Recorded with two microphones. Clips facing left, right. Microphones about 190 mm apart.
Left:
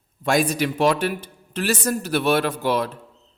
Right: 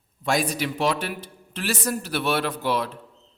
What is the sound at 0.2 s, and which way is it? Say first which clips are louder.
A man's voice: left 4 dB; 50° left (ahead or behind).